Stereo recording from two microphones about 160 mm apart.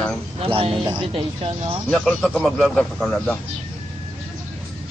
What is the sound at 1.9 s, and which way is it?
Speech, 5° left (ahead or behind).